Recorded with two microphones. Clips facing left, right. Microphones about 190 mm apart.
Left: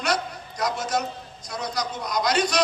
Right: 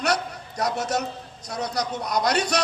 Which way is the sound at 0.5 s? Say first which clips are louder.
Right 1 dB; 65° right (ahead or behind).